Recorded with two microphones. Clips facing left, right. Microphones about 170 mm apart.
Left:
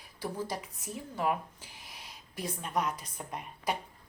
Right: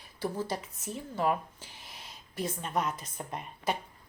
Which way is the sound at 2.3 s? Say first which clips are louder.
Right 1 dB; 10° left (ahead or behind).